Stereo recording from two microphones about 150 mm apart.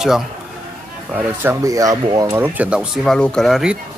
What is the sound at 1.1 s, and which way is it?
Speech, 15° right (ahead or behind).